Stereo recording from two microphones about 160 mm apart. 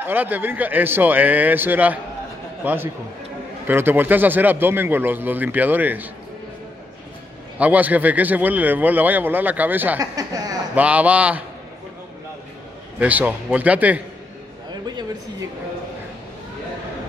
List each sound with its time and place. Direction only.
0.0 s a man's voice: 10° right (ahead or behind)
7.5 s a man's voice: 10° right (ahead or behind)
10.1 s a sound: 25° right (ahead or behind)
10.7 s a man's voice: 10° right (ahead or behind)
13.0 s a man's voice: 10° right (ahead or behind)
14.7 s a sound: 25° right (ahead or behind)